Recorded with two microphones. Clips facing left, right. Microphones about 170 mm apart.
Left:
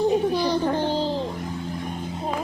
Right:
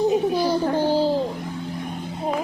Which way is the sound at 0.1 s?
5° right (ahead or behind).